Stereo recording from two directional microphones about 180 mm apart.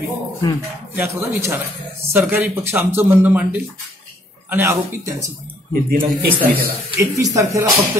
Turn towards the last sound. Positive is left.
turn(degrees=-15)  # may be behind; listen again after turning